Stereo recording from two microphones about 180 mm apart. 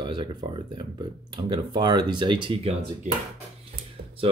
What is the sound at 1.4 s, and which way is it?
Speech, 25° right (ahead or behind).